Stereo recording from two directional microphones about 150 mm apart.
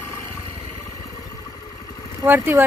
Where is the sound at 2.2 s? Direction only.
15° right (ahead or behind).